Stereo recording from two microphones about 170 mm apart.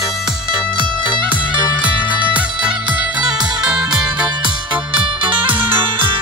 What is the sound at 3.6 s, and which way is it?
Music, 5° right (ahead or behind).